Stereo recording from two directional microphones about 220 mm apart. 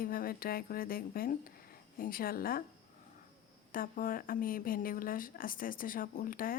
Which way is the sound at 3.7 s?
40° left (ahead or behind).